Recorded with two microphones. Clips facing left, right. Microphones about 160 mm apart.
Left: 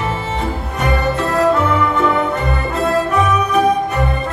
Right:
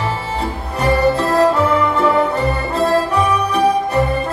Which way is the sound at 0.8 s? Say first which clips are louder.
Right 4 dB; 35° right (ahead or behind).